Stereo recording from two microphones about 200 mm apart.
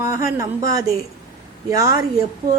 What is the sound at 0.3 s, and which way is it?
Speech, 15° right (ahead or behind).